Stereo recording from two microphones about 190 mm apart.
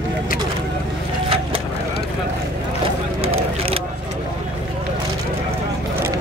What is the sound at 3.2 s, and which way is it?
Honk, 30° right (ahead or behind).